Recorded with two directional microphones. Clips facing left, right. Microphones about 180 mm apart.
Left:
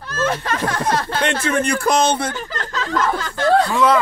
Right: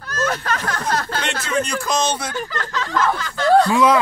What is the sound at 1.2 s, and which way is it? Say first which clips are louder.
Speech: left 4 dB; 55° left (ahead or behind).